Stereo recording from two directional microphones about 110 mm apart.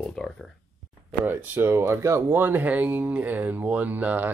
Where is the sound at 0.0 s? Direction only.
5° left (ahead or behind).